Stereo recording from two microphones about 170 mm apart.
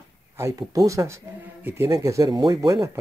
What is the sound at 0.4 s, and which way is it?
Speech, 15° right (ahead or behind).